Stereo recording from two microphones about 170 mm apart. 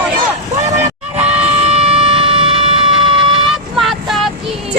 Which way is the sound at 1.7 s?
35° right (ahead or behind).